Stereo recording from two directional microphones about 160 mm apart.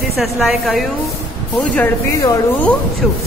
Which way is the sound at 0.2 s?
Centre (ahead or behind).